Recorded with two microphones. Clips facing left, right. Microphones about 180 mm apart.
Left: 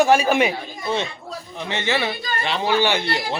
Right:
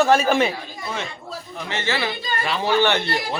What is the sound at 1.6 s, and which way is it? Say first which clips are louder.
A man's voice: left 2 dB; 20° left (ahead or behind).